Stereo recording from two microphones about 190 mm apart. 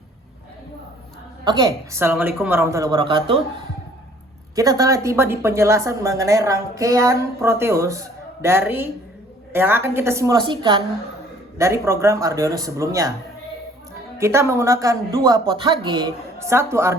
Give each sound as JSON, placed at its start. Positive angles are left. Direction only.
{"t": 1.5, "sound": "speech", "side_deg": -20}
{"t": 4.5, "sound": "speech", "side_deg": -20}
{"t": 11.5, "sound": "speech", "side_deg": -15}
{"t": 14.2, "sound": "speech", "side_deg": -15}
{"t": 16.4, "sound": "speech", "side_deg": -15}